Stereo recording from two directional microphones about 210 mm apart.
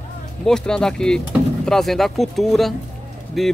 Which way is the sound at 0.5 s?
5° left (ahead or behind).